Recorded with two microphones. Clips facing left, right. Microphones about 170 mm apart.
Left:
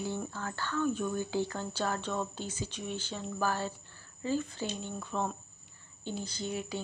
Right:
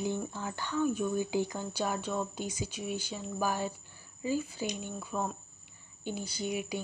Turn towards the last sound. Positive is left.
turn(degrees=-10)  # may be behind; listen again after turning